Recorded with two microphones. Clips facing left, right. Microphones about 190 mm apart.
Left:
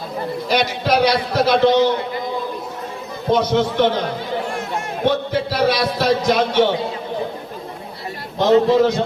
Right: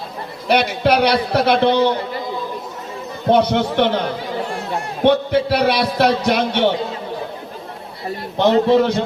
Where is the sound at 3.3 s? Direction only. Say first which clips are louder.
Right 2 dB; 60° right (ahead or behind).